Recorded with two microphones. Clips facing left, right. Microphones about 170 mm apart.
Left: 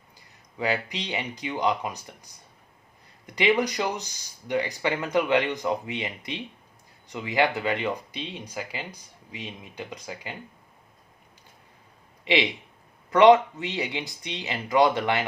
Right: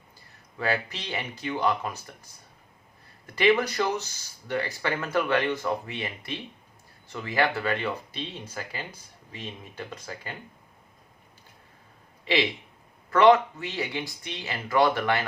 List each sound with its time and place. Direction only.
0.6 s speech: 15° left (ahead or behind)
3.2 s speech: 15° left (ahead or behind)
12.2 s speech: 20° left (ahead or behind)